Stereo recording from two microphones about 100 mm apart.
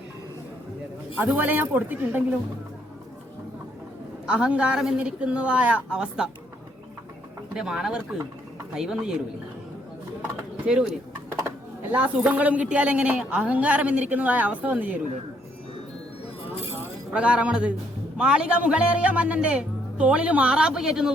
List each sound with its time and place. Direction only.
1.1 s speech: 15° right (ahead or behind)
4.3 s speech: 10° right (ahead or behind)
7.5 s speech: 5° right (ahead or behind)
10.7 s speech: 10° right (ahead or behind)
17.1 s speech: 10° right (ahead or behind)